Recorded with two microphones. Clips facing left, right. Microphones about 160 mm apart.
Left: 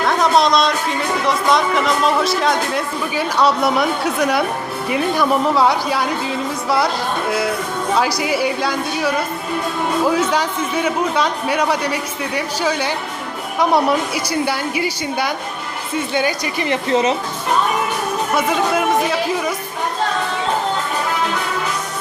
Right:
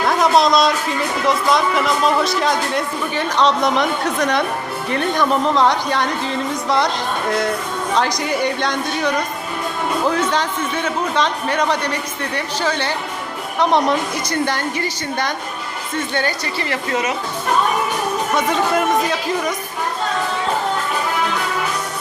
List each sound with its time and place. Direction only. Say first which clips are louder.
0.0 s a man's voice: even; centre (ahead or behind); by 16.7 s 15° left (ahead or behind)
16.9 s speech: left 6 dB; 30° left (ahead or behind)
18.3 s a man's voice: even; 5° left (ahead or behind)